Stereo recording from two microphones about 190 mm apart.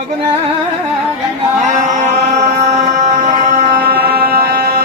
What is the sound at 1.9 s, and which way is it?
Music, 40° right (ahead or behind).